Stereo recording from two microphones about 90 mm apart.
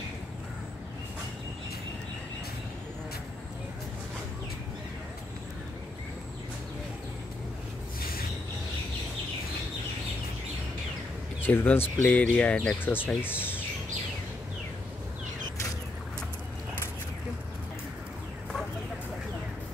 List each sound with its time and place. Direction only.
11.4 s speech: 25° left (ahead or behind)
12.8 s speech: 25° left (ahead or behind)